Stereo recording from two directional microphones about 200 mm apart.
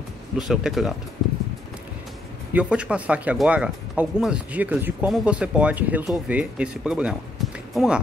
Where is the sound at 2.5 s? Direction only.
5° right (ahead or behind).